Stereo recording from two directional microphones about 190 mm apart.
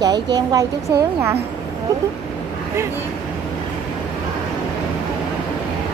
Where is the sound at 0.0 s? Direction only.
20° right (ahead or behind).